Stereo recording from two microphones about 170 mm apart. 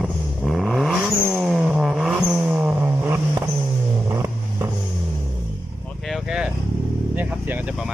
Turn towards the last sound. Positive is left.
turn(degrees=-10)  # may be behind; listen again after turning